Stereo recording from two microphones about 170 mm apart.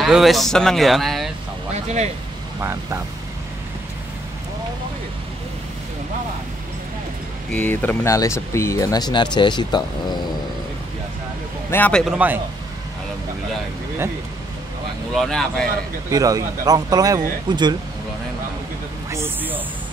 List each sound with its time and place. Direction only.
0.0 s speech: centre (ahead or behind)
2.6 s a man's voice: 15° right (ahead or behind)
7.5 s speech: 10° left (ahead or behind); by 10.1 s 25° left (ahead or behind)
11.7 s a man's voice: 10° left (ahead or behind)
12.0 s a man's voice: 10° right (ahead or behind)
15.1 s speech: 5° left (ahead or behind)
16.1 s speech: 20° right (ahead or behind)
19.0 s a sound: 15° right (ahead or behind)